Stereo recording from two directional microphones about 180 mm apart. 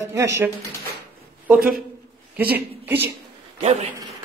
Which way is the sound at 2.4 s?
10° right (ahead or behind).